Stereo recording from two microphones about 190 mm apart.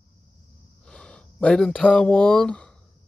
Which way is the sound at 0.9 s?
5° left (ahead or behind).